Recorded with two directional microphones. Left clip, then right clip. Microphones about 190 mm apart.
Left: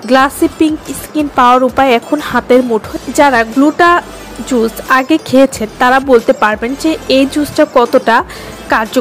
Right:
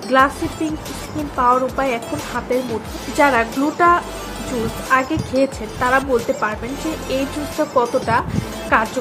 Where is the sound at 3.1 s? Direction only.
40° left (ahead or behind).